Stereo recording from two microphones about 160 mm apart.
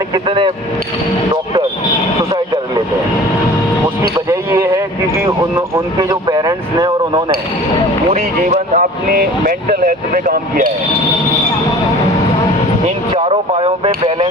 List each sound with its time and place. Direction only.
0.1 s speech: 30° right (ahead or behind)
4.3 s a sound: 20° right (ahead or behind)
5.5 s speech: 20° right (ahead or behind)
8.4 s speech: 50° right (ahead or behind)
13.1 s speech: 40° right (ahead or behind)